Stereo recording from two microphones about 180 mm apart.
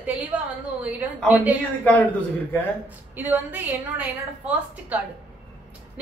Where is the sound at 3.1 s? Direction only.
10° right (ahead or behind).